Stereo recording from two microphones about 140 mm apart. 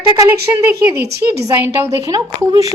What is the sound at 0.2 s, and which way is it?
A woman's voice, 15° right (ahead or behind).